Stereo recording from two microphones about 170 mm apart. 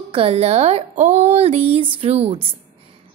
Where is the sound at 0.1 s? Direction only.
35° right (ahead or behind).